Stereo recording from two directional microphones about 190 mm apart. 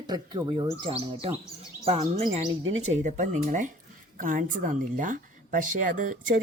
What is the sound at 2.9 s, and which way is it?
A woman's voice, 40° right (ahead or behind).